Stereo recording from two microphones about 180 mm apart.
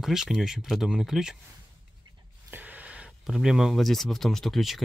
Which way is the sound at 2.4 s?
10° right (ahead or behind).